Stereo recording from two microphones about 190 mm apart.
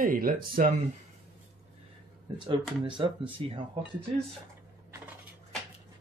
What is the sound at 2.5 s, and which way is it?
Speech, 25° right (ahead or behind).